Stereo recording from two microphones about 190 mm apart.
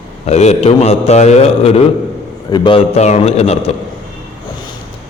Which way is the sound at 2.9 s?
35° left (ahead or behind).